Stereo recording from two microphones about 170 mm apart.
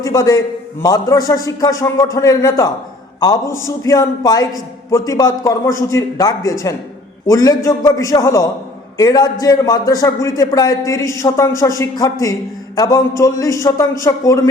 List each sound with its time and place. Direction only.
0.0 s a man's voice: 20° left (ahead or behind)